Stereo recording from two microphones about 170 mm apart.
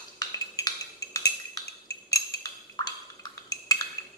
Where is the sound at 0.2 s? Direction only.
20° left (ahead or behind).